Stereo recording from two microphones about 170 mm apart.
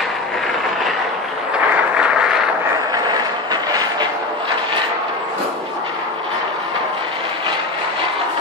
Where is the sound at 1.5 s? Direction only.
5° right (ahead or behind).